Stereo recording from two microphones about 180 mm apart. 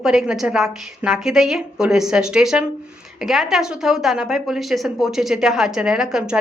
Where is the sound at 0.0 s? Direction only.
Centre (ahead or behind).